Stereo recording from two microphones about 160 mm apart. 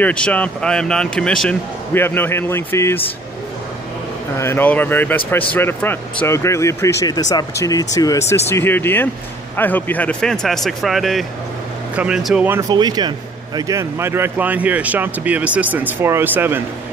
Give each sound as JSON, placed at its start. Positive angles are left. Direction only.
{"t": 0.0, "sound": "speech", "side_deg": 10}
{"t": 4.4, "sound": "speech", "side_deg": 15}
{"t": 12.4, "sound": "speech", "side_deg": -15}